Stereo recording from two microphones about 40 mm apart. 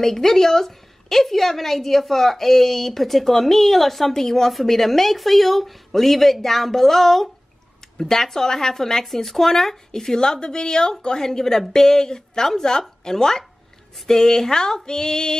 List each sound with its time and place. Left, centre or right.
0.0 s a woman's voice: centre